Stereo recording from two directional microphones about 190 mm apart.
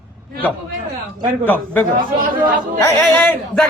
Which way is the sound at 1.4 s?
10° left (ahead or behind).